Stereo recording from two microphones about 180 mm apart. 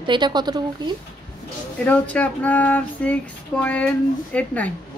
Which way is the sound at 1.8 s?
10° left (ahead or behind).